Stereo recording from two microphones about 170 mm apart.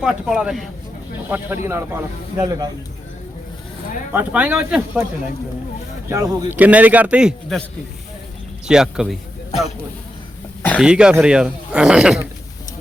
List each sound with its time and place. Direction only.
0.0 s a man's voice: 5° right (ahead or behind); by 2.6 s 20° right (ahead or behind)
4.1 s a man's voice: 10° right (ahead or behind)
6.1 s a man's voice: 15° right (ahead or behind)
8.6 s speech: 5° right (ahead or behind)
10.8 s speech: 5° right (ahead or behind)